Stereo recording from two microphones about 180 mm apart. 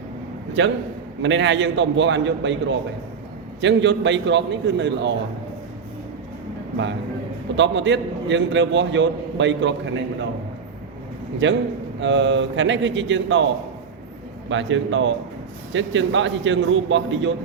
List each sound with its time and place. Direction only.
1.2 s a man's voice: 85° right
7.5 s a man's voice: 85° right
11.4 s a man's voice: 90° right
14.5 s a man's voice: 90° right